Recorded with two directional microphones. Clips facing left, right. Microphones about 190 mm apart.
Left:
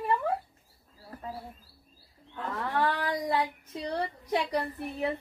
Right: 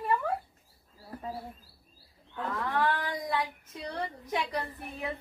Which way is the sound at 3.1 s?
35° left (ahead or behind).